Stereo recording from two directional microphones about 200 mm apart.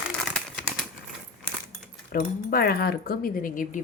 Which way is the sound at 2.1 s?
50° left (ahead or behind).